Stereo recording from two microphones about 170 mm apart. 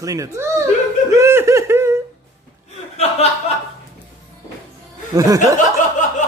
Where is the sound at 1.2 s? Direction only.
15° right (ahead or behind).